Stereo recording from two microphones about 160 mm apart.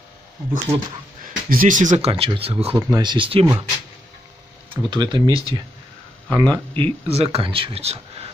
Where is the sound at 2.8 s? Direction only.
25° right (ahead or behind).